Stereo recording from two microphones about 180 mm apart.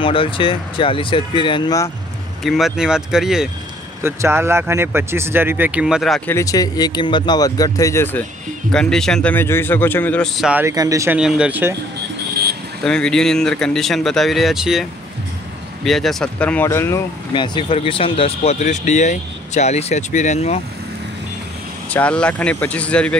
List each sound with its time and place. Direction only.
0.0 s speech: 30° left (ahead or behind)
2.4 s speech: centre (ahead or behind)
4.0 s speech: 15° right (ahead or behind)
6.3 s speech: 20° left (ahead or behind); by 10.6 s centre (ahead or behind)
10.6 s speech: 20° right (ahead or behind)
11.1 s speech: 5° right (ahead or behind)
12.8 s speech: 5° left (ahead or behind)
17.3 s speech: 25° left (ahead or behind)
21.9 s speech: 5° left (ahead or behind)